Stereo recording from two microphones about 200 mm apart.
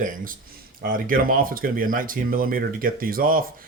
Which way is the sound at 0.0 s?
40° right (ahead or behind).